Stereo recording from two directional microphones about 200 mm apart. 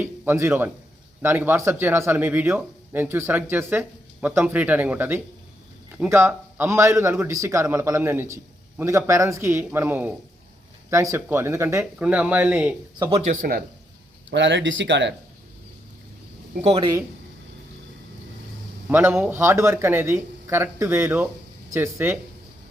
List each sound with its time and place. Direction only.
0.0 s speech: 10° right (ahead or behind)
13.0 s speech: 30° right (ahead or behind)
14.3 s speech: 65° right (ahead or behind)
16.6 s speech: 30° right (ahead or behind)
18.9 s speech: 10° right (ahead or behind)